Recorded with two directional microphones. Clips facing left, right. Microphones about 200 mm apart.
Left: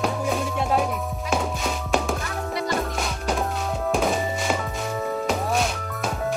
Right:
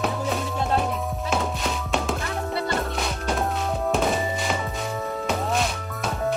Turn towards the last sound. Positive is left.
turn(degrees=0)  # may be behind; listen again after turning